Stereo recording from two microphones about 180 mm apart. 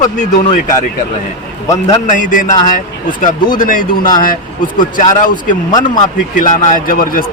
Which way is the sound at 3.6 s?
50° left (ahead or behind).